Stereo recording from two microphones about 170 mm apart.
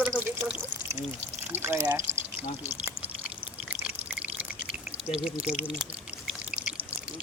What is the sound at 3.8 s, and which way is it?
Pour, 5° right (ahead or behind).